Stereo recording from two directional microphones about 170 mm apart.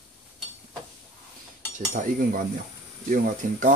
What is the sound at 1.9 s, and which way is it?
Speech, 50° right (ahead or behind).